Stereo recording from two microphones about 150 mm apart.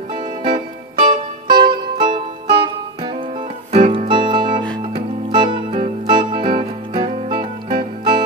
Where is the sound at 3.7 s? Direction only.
45° right (ahead or behind).